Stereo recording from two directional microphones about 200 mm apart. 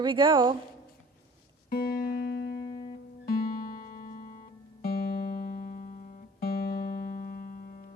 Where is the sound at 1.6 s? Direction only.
50° left (ahead or behind).